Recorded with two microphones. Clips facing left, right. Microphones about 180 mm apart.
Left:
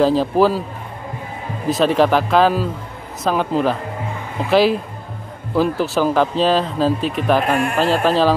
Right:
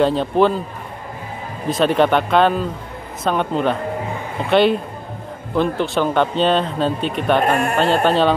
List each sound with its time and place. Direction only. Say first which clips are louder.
0.0 s speech: left 1 dB; centre (ahead or behind)
1.7 s speech: left 1 dB; centre (ahead or behind)